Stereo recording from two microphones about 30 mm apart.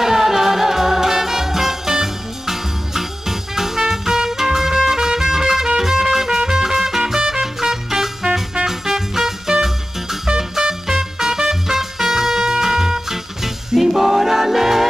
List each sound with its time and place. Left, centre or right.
0.0 s music: centre